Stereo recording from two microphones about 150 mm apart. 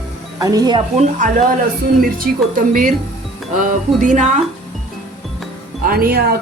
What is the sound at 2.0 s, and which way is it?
Speech, 75° right (ahead or behind).